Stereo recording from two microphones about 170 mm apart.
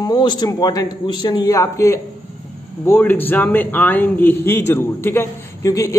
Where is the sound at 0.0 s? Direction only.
25° left (ahead or behind).